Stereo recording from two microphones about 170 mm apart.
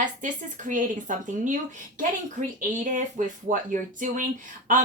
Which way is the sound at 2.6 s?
45° right (ahead or behind).